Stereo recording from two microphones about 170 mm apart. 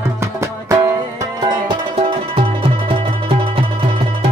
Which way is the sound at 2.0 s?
35° right (ahead or behind).